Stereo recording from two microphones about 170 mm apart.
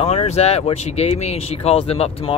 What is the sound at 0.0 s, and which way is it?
Speech, 40° left (ahead or behind).